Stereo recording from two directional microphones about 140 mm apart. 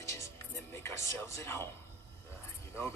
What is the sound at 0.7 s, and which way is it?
Speech, 20° left (ahead or behind).